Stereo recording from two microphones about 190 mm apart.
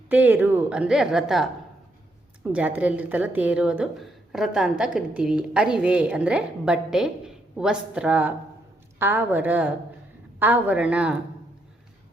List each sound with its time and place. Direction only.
0.1 s a woman's voice: 10° right (ahead or behind)